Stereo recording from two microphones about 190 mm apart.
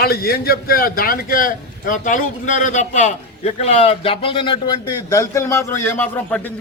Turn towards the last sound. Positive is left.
turn(degrees=10)  # may be behind; listen again after turning